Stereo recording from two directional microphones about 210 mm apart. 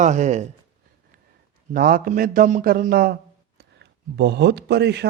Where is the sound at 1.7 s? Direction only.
40° right (ahead or behind).